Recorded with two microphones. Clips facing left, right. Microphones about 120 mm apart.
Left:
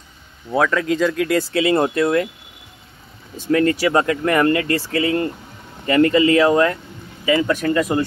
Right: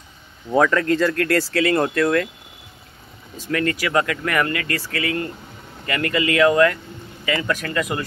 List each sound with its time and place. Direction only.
0.5 s speech: centre (ahead or behind); by 2.2 s 20° left (ahead or behind)
3.5 s speech: 30° left (ahead or behind)